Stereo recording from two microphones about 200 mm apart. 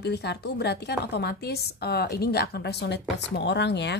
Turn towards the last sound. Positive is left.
turn(degrees=55)  # may be behind; listen again after turning